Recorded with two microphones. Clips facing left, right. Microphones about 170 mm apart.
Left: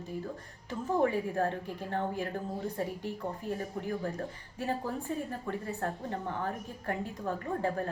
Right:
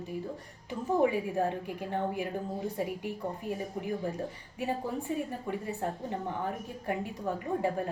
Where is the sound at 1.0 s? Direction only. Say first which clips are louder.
Right 1 dB; 15° right (ahead or behind).